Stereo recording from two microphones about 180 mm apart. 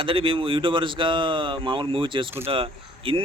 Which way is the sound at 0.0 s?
30° right (ahead or behind).